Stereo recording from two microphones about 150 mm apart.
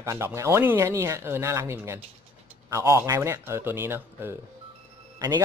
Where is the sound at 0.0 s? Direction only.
20° right (ahead or behind).